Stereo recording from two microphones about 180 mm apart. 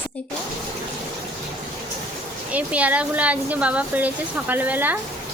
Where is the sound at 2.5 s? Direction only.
10° right (ahead or behind).